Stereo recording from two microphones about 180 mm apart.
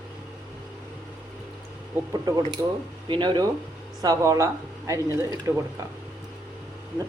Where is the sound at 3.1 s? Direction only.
25° right (ahead or behind).